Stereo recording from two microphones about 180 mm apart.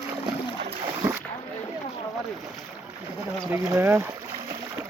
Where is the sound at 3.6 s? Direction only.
15° right (ahead or behind).